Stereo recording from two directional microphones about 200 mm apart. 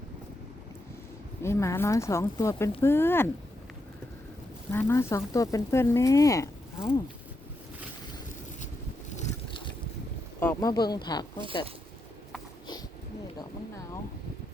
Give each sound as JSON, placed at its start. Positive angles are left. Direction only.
{"t": 1.4, "sound": "speech", "side_deg": 15}
{"t": 4.7, "sound": "speech", "side_deg": 10}
{"t": 8.6, "sound": "boat", "side_deg": 35}
{"t": 10.4, "sound": "speech", "side_deg": 15}
{"t": 13.4, "sound": "a sound", "side_deg": 15}